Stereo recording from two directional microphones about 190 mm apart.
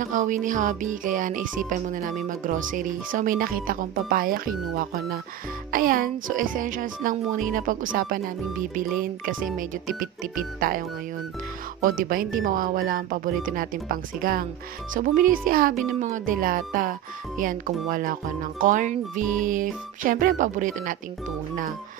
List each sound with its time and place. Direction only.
0.0 s speech: 40° right (ahead or behind)
11.8 s speech: 45° right (ahead or behind)